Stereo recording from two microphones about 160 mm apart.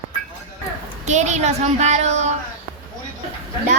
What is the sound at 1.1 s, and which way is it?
A woman's voice, 45° right (ahead or behind).